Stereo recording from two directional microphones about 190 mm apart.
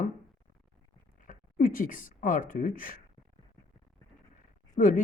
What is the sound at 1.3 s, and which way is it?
Speech, 45° left (ahead or behind).